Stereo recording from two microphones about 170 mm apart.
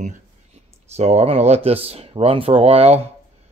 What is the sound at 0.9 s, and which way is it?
Speech, 40° right (ahead or behind).